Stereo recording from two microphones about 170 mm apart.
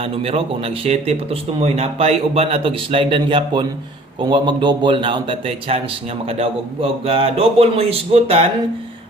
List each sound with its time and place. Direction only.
0.0 s a man's voice: 35° right (ahead or behind)